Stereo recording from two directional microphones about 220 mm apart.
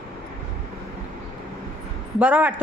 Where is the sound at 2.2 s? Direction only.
5° right (ahead or behind).